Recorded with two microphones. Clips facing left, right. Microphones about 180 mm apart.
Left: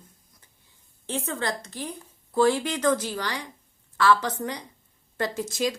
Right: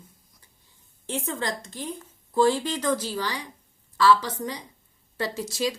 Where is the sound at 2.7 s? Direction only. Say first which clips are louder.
Left 2 dB; 15° right (ahead or behind).